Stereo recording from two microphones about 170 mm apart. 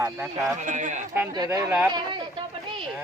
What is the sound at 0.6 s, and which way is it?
Speech, 45° right (ahead or behind).